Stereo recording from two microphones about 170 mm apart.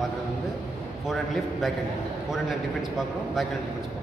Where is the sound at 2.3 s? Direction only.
Centre (ahead or behind).